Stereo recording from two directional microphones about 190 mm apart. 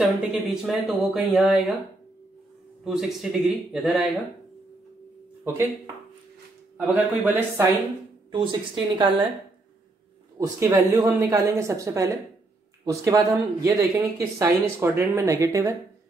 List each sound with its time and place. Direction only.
0.0 s speech: 5° right (ahead or behind)
2.8 s speech: centre (ahead or behind)
5.4 s speech: 15° right (ahead or behind)
6.8 s speech: 10° right (ahead or behind)
8.3 s a woman's voice: 25° right (ahead or behind)
10.3 s a woman's voice: 15° right (ahead or behind)